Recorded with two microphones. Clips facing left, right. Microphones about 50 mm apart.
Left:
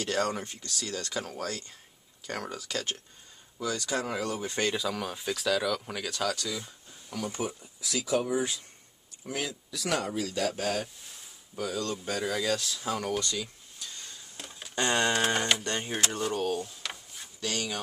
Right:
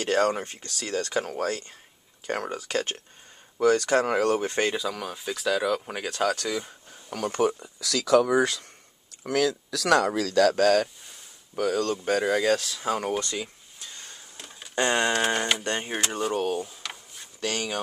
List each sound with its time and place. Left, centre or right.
0.0 s speech: right
3.5 s speech: right
4.7 s speech: centre; by 10.9 s right
11.5 s speech: right
13.2 s a sound: right
14.8 s speech: right
15.1 s speech: centre
15.6 s speech: right
15.9 s speech: centre
16.8 s a sound: centre
17.4 s speech: right